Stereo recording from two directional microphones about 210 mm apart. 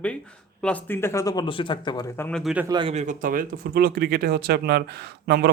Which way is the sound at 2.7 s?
25° right (ahead or behind).